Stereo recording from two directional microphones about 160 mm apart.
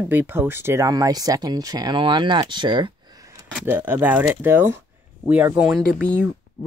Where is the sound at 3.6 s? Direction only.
15° right (ahead or behind).